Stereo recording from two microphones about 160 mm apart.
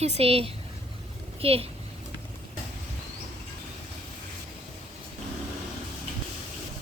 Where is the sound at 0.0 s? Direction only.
40° right (ahead or behind).